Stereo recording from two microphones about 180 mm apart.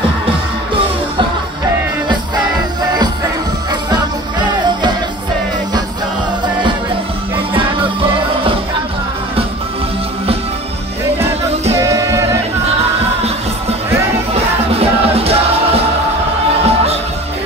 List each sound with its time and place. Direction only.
11.8 s music: 15° right (ahead or behind)
14.3 s music: 35° right (ahead or behind)